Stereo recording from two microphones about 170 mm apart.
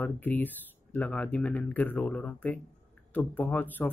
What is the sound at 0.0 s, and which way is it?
Speech, 10° left (ahead or behind).